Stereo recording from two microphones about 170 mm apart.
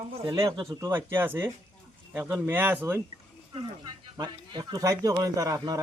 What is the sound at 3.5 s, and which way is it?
Speech, 25° right (ahead or behind).